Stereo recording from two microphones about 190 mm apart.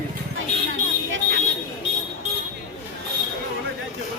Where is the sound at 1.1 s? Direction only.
70° right (ahead or behind).